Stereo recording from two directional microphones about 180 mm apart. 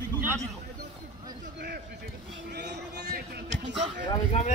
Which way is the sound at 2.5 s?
65° right (ahead or behind).